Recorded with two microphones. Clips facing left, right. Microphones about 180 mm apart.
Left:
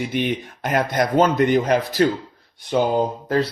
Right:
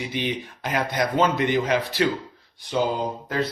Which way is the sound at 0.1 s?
55° left (ahead or behind).